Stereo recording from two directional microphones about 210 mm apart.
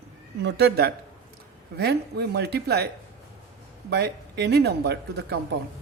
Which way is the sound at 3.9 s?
50° right (ahead or behind).